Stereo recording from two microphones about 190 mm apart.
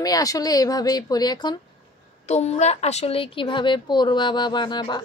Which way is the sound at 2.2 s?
35° left (ahead or behind).